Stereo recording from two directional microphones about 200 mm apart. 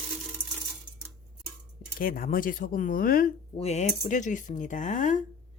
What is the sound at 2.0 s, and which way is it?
Speech, 45° left (ahead or behind).